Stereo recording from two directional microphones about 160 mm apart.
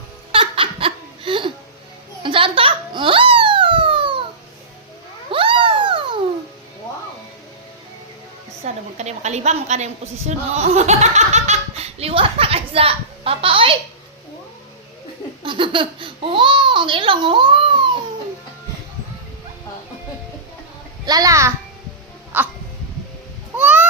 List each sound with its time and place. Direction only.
0.3 s laughter: 35° right (ahead or behind)
2.2 s giggle: 35° right (ahead or behind)
5.3 s a sound: 30° right (ahead or behind)
8.6 s a woman's voice: 45° right (ahead or behind)
15.4 s speech: 30° right (ahead or behind)
21.1 s a child's voice: 20° right (ahead or behind)
22.3 s hiccup: 10° right (ahead or behind)
23.6 s goose: 10° right (ahead or behind)